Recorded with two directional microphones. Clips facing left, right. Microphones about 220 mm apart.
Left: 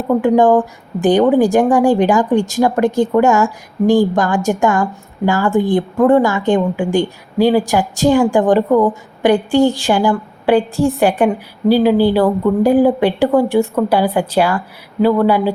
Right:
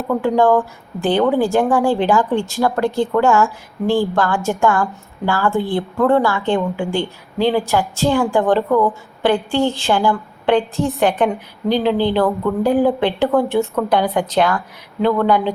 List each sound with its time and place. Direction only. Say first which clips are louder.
0.1 s a woman's voice: left 4 dB; 15° left (ahead or behind)